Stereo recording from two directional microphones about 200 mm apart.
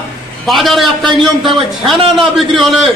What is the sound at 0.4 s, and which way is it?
Speech, centre (ahead or behind).